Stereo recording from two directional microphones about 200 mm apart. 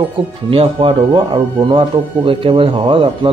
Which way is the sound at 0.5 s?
25° right (ahead or behind).